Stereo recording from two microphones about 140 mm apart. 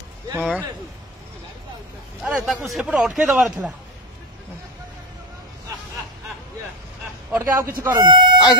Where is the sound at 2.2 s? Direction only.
10° right (ahead or behind).